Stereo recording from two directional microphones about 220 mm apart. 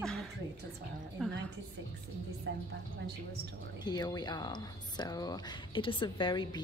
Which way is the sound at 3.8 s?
20° left (ahead or behind).